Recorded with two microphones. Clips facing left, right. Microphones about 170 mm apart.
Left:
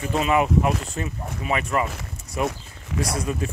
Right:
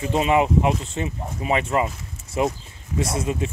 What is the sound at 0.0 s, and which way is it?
Speech, 25° right (ahead or behind).